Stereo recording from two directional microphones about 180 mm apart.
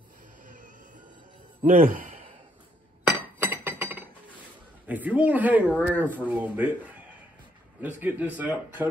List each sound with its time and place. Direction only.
1.6 s a man's voice: 40° right (ahead or behind)
3.1 s glass: 10° right (ahead or behind)
4.8 s speech: 10° right (ahead or behind)